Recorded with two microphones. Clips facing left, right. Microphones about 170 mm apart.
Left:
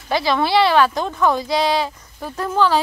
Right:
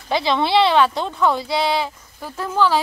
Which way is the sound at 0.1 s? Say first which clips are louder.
Even; 20° right (ahead or behind).